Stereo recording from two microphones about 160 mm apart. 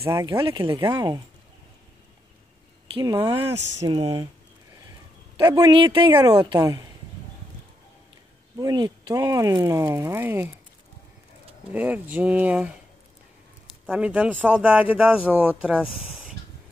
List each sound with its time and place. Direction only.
0.0 s speech: 20° right (ahead or behind)
0.6 s speech: 30° right (ahead or behind)
0.8 s speech: 20° right (ahead or behind)
2.9 s speech: 30° right (ahead or behind)
5.4 s speech: 20° right (ahead or behind)
6.1 s speech: 20° right (ahead or behind)
8.5 s speech: 25° right (ahead or behind)
11.7 s speech: 10° right (ahead or behind)
13.8 s speech: 5° right (ahead or behind)